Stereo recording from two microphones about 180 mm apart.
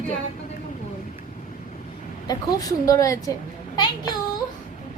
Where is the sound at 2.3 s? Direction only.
20° left (ahead or behind).